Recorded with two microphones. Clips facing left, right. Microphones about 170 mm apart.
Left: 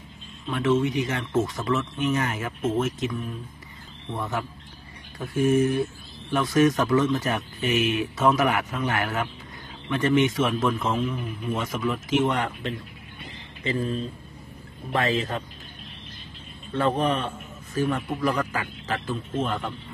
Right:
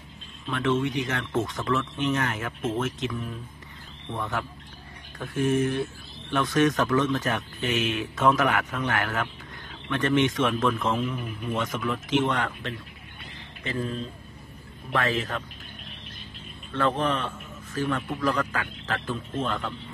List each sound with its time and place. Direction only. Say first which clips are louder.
0.5 s speech: left 3 dB; 5° left (ahead or behind)
14.9 s speech: left 2 dB; 15° left (ahead or behind)
16.7 s speech: left 2 dB; 15° left (ahead or behind)